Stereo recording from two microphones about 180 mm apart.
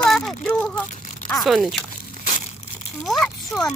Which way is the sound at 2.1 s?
40° left (ahead or behind).